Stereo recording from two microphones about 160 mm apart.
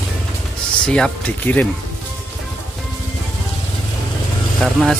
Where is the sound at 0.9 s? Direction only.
10° left (ahead or behind).